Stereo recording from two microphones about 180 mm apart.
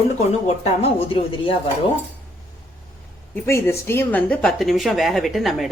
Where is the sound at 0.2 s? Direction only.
35° left (ahead or behind).